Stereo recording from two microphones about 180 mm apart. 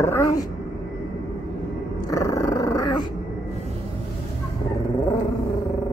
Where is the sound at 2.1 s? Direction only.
15° left (ahead or behind).